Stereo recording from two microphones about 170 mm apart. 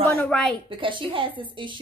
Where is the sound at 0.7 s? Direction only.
30° right (ahead or behind).